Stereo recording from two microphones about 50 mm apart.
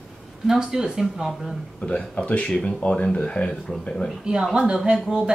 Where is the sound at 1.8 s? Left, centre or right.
Left.